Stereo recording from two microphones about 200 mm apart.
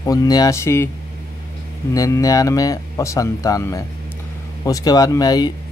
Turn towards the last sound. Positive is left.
turn(degrees=20)  # may be behind; listen again after turning